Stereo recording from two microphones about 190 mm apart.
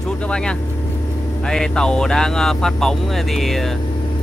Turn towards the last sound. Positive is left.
turn(degrees=0)  # may be behind; listen again after turning